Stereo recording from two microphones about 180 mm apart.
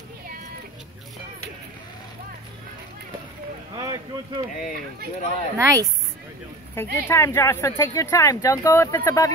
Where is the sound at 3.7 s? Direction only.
25° right (ahead or behind).